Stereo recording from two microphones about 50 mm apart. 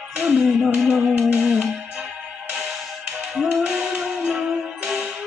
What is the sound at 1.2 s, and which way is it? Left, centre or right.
Music, right.